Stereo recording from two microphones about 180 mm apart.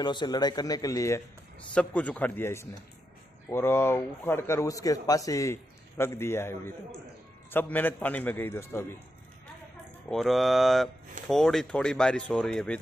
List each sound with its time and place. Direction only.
0.0 s a man's voice: 25° left (ahead or behind)
10.0 s speech: centre (ahead or behind)